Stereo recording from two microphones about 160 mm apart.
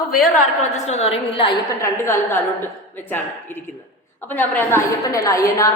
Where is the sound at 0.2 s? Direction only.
50° left (ahead or behind).